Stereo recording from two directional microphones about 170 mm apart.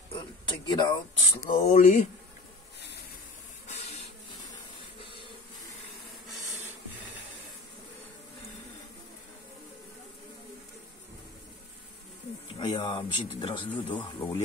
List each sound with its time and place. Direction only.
0.1 s speech: 25° left (ahead or behind)
1.6 s speech: 45° left (ahead or behind)
3.6 s hiss: 40° left (ahead or behind)
12.5 s speech: 25° left (ahead or behind)